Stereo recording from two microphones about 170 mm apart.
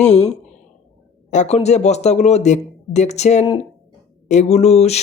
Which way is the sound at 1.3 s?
40° left (ahead or behind).